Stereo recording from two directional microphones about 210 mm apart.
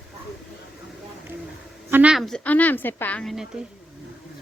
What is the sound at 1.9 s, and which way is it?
A woman's voice, 5° right (ahead or behind).